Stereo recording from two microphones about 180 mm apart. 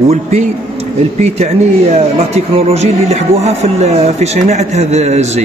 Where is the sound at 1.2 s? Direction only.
35° right (ahead or behind).